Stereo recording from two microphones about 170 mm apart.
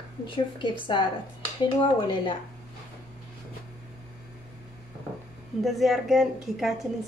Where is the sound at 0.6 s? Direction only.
30° left (ahead or behind).